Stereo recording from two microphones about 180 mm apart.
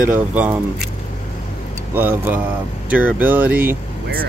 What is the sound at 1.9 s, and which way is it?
Speech, 10° right (ahead or behind).